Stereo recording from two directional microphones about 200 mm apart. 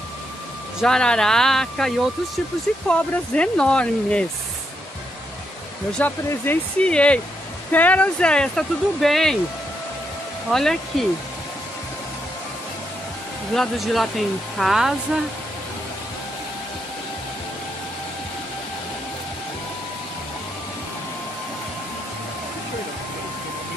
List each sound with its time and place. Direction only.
0.7 s speech: 5° left (ahead or behind)
5.9 s speech: 10° left (ahead or behind)
10.5 s speech: centre (ahead or behind)
13.6 s speech: centre (ahead or behind)